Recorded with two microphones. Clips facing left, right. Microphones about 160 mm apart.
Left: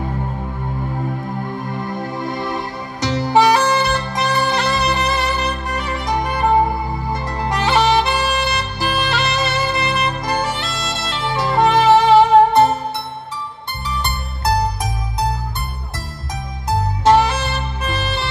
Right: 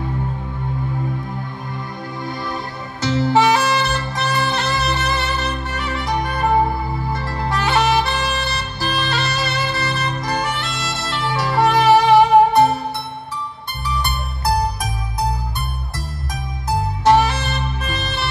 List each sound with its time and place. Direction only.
1.7 s music: 50° left (ahead or behind)
2.4 s music: 20° left (ahead or behind)
3.3 s saxophone: 15° left (ahead or behind)
6.0 s music: 20° left (ahead or behind)
11.9 s music: 15° right (ahead or behind)
17.0 s saxophone: 20° left (ahead or behind)